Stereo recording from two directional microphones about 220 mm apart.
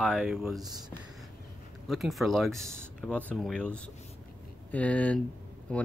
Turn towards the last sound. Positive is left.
turn(degrees=5)  # may be behind; listen again after turning